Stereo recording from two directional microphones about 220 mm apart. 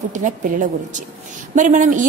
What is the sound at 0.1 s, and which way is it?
A woman's voice, 35° right (ahead or behind).